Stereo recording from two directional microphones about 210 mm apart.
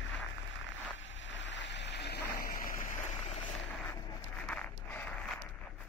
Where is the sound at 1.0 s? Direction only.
60° left (ahead or behind); by 2.7 s 45° left (ahead or behind).